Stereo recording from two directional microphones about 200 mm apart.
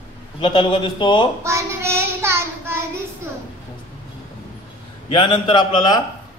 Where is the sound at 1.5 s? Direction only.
15° right (ahead or behind).